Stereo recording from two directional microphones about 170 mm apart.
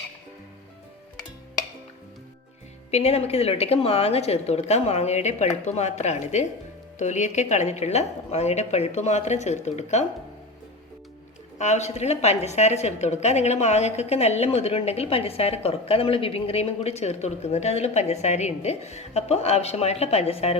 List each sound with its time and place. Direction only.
2.9 s a woman's voice: 40° left (ahead or behind)
11.5 s a woman's voice: 40° left (ahead or behind)